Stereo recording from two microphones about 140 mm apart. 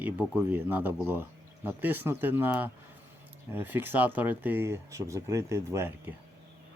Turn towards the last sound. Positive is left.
turn(degrees=-20)  # may be behind; listen again after turning